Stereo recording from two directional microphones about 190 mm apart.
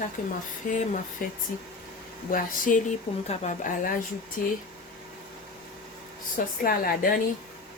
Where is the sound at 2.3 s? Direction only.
45° left (ahead or behind).